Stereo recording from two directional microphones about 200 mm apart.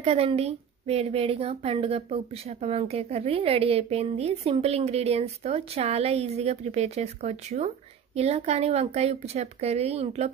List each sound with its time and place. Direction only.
0.0 s a woman's voice: 30° right (ahead or behind)